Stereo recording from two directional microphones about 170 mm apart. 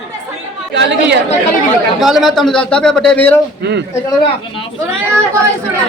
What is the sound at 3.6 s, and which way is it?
Speech, 80° right.